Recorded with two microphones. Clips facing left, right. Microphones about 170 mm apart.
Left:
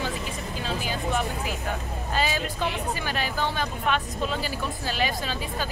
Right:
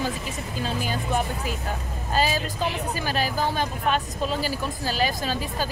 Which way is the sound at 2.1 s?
35° right (ahead or behind).